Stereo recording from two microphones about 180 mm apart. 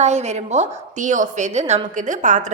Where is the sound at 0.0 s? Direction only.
40° right (ahead or behind).